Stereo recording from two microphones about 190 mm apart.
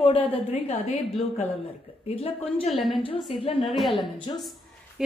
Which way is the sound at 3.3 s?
30° left (ahead or behind).